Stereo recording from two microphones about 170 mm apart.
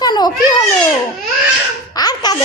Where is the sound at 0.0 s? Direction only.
25° left (ahead or behind).